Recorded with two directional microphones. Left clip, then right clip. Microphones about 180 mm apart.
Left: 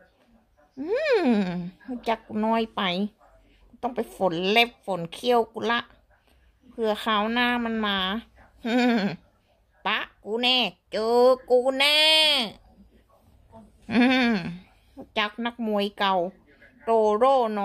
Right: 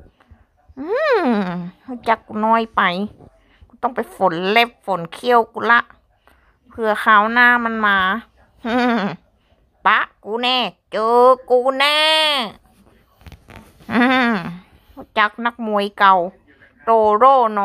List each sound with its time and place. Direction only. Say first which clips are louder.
0.7 s speech: right 6 dB; 5° left (ahead or behind)
8.6 s bleat: right 6 dB; 5° left (ahead or behind)
9.8 s a woman's voice: right 11 dB; centre (ahead or behind)
13.8 s a sound: right 6 dB; 5° left (ahead or behind)
15.4 s speech: right 7 dB; 5° left (ahead or behind)